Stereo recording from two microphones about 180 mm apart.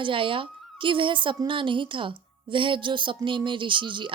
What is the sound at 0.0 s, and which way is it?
A woman's voice, 30° right (ahead or behind).